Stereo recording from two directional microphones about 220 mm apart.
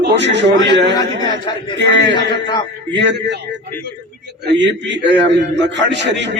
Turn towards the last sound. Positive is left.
turn(degrees=-55)  # may be behind; listen again after turning